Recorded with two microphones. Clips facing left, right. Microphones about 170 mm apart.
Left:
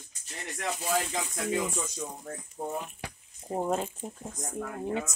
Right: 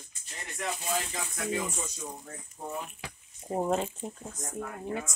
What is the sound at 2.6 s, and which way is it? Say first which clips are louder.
Speech: left 4 dB; 50° left (ahead or behind).